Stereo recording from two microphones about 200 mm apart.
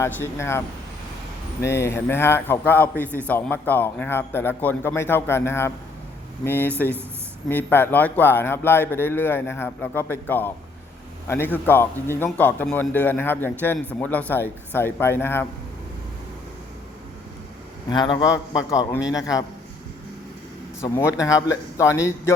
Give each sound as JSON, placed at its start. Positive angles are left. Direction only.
{"t": 0.0, "sound": "a man's voice", "side_deg": 15}
{"t": 1.6, "sound": "a man's voice", "side_deg": 15}
{"t": 17.8, "sound": "a man's voice", "side_deg": 20}
{"t": 20.9, "sound": "a man's voice", "side_deg": 15}